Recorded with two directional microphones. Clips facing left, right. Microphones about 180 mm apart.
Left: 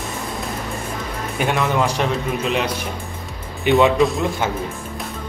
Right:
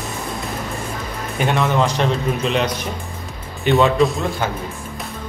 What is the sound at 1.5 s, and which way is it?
A man's voice, 10° left (ahead or behind).